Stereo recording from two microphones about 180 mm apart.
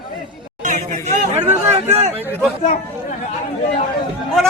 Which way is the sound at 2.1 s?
10° right (ahead or behind).